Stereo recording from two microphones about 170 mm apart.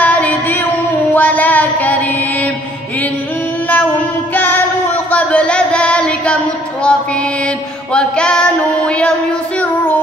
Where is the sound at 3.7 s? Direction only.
10° left (ahead or behind).